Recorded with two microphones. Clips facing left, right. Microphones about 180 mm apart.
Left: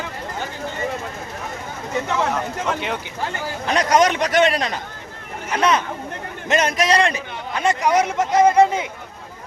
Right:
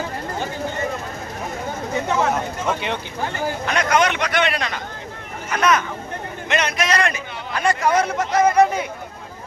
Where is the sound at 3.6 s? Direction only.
35° left (ahead or behind).